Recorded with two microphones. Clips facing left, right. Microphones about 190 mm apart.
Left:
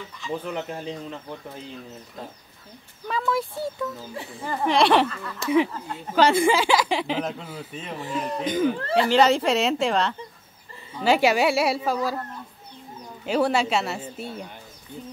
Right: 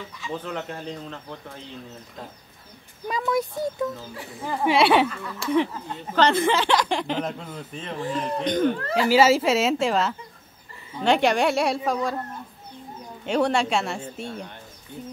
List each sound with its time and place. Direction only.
0.5 s speech: 10° left (ahead or behind)
3.1 s speech: 20° right (ahead or behind)
4.4 s speech: 5° right (ahead or behind)
5.5 s speech: 5° left (ahead or behind)
13.2 s speech: 5° left (ahead or behind)